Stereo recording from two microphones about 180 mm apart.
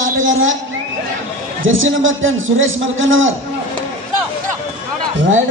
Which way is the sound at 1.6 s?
90° right.